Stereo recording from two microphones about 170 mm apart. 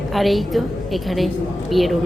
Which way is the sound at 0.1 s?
Centre (ahead or behind).